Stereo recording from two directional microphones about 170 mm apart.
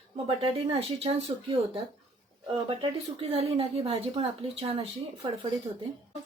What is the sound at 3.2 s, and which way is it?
A woman's voice, 35° right (ahead or behind).